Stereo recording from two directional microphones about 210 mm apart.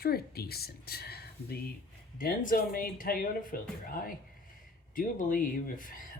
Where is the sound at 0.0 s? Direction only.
45° left (ahead or behind).